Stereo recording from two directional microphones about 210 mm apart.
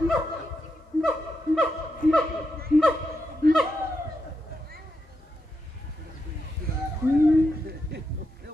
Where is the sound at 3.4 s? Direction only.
45° right (ahead or behind).